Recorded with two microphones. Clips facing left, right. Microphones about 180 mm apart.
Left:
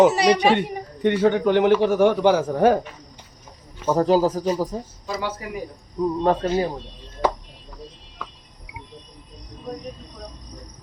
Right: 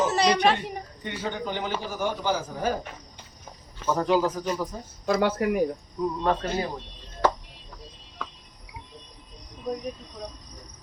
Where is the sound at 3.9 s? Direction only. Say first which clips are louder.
Left 5 dB; 40° left (ahead or behind).